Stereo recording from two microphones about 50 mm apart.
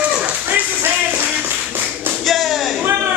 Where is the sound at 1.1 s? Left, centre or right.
Right.